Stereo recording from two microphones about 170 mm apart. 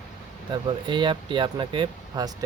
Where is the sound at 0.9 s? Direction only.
30° right (ahead or behind).